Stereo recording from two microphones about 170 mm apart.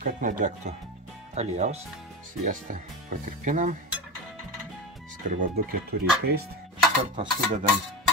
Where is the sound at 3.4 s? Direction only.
45° right (ahead or behind).